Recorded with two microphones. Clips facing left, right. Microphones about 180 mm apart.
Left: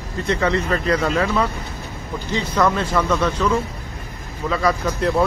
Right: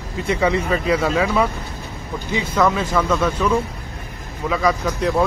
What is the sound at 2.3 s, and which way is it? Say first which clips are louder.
Speech: right 1 dB; 5° right (ahead or behind).